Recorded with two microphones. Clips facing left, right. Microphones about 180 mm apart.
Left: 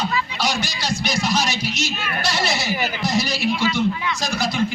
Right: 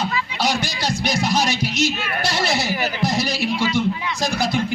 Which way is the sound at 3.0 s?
55° right (ahead or behind).